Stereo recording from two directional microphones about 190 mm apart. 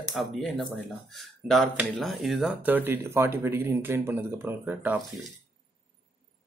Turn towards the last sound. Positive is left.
turn(degrees=-10)  # may be behind; listen again after turning